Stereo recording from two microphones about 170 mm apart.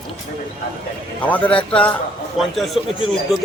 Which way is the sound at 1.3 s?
5° left (ahead or behind).